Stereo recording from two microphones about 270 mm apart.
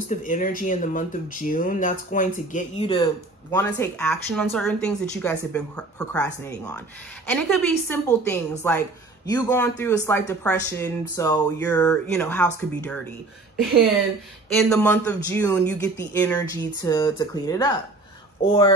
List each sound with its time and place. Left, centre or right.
0.1 s speech: left; by 3.6 s centre
3.8 s a woman's voice: centre
14.5 s speech: centre